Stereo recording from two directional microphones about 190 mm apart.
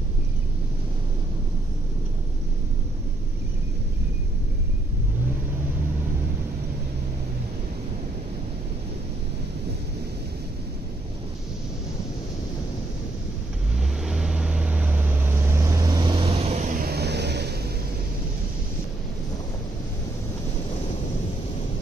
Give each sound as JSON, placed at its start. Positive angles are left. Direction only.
{"t": 13.7, "sound": "vehicle", "side_deg": 0}